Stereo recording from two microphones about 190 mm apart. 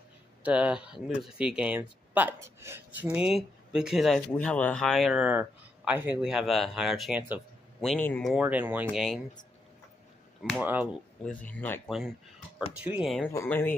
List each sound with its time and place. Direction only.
0.4 s speech: 5° right (ahead or behind)
7.8 s speech: 5° left (ahead or behind)
8.3 s speech: 5° right (ahead or behind)
10.6 s speech: 10° right (ahead or behind)
11.2 s speech: 10° left (ahead or behind)
12.8 s speech: 5° right (ahead or behind)
13.3 s speech: 15° left (ahead or behind)